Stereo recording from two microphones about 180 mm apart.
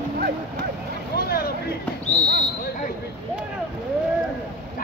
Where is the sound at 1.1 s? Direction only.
60° left (ahead or behind).